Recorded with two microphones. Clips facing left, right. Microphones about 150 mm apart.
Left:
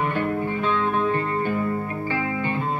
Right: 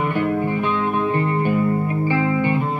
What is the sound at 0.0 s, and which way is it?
Music, 15° right (ahead or behind).